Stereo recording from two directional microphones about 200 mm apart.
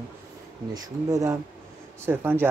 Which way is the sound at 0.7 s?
15° right (ahead or behind).